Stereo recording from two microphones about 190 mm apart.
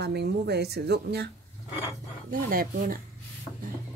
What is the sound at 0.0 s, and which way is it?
Speech, 60° right (ahead or behind).